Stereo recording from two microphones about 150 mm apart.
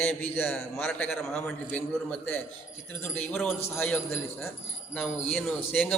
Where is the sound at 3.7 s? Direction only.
15° left (ahead or behind).